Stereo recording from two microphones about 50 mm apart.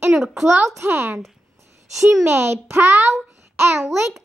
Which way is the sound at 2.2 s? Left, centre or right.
Right.